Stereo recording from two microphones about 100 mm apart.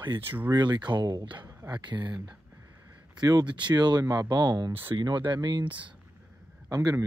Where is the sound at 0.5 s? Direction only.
45° right (ahead or behind).